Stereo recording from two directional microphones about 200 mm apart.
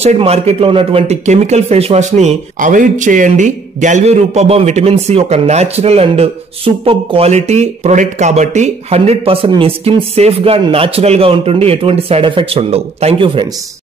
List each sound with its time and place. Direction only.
0.0 s speech: 30° right (ahead or behind)